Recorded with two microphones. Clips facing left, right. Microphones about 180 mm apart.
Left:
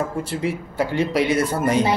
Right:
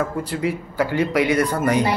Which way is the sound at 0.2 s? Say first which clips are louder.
Right 1 dB; 25° left (ahead or behind).